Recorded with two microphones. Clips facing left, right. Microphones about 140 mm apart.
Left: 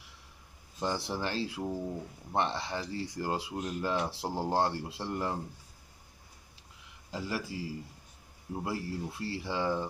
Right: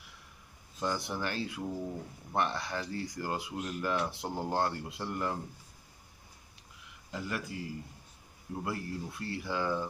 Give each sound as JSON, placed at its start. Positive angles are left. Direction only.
{"t": 0.7, "sound": "speech", "side_deg": 30}
{"t": 7.1, "sound": "speech", "side_deg": 30}
{"t": 8.6, "sound": "speech", "side_deg": 30}